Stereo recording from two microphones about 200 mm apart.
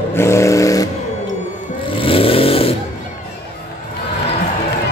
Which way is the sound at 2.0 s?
25° left (ahead or behind).